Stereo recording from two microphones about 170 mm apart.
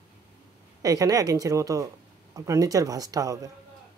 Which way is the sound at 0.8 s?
20° right (ahead or behind).